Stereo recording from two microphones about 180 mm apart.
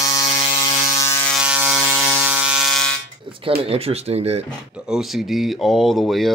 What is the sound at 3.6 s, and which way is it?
Speech, 35° right (ahead or behind).